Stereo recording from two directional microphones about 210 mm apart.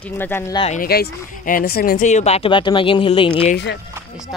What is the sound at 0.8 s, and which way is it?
Speech, 45° left (ahead or behind).